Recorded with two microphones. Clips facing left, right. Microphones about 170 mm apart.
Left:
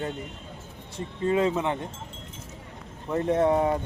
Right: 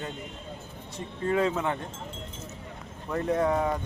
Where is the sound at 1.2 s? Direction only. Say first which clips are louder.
Left 2 dB; 20° left (ahead or behind).